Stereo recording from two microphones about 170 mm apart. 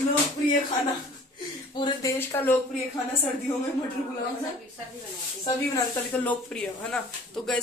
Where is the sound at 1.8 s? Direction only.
25° left (ahead or behind).